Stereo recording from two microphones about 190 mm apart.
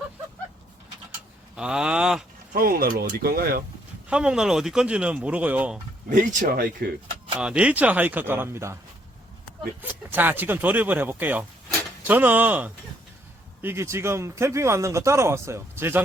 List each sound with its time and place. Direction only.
1.5 s speech: 5° right (ahead or behind)
2.5 s speech: 50° right (ahead or behind)
4.1 s speech: 5° right (ahead or behind)
6.1 s speech: 45° right (ahead or behind)
7.3 s speech: 5° right (ahead or behind)
9.8 s speech: 10° right (ahead or behind)